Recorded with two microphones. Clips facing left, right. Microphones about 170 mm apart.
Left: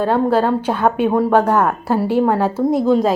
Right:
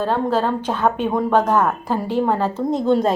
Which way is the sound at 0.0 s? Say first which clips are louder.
Left 4 dB; 10° left (ahead or behind).